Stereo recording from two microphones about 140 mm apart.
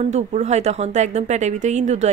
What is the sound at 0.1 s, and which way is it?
Speech, 55° right (ahead or behind).